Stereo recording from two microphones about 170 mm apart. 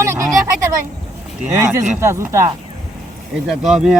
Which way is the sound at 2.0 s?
15° right (ahead or behind).